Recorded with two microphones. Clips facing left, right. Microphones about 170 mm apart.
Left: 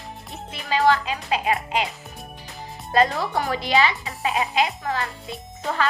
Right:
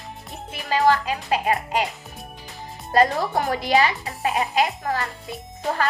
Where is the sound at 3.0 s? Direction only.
40° right (ahead or behind).